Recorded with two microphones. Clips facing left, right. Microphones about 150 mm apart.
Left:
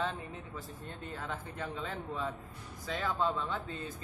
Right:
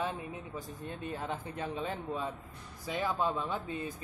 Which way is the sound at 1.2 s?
20° right (ahead or behind).